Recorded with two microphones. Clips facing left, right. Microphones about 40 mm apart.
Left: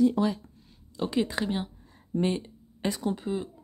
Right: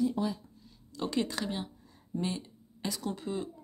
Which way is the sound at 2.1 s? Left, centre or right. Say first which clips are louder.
Left 7 dB; left.